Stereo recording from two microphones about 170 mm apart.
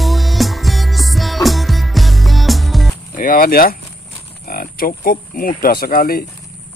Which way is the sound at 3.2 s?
55° left (ahead or behind).